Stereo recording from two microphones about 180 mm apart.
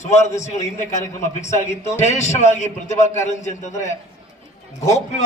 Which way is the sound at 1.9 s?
40° left (ahead or behind).